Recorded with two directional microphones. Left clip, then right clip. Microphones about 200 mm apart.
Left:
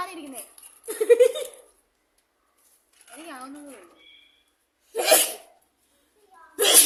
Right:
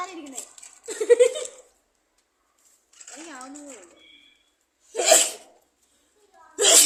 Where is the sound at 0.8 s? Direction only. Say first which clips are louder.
Even; 10° right (ahead or behind).